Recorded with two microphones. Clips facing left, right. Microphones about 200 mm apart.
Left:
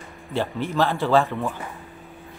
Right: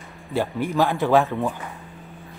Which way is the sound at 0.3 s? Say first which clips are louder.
Right 2 dB; 15° right (ahead or behind).